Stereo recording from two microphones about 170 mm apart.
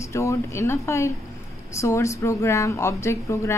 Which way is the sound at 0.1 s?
15° left (ahead or behind).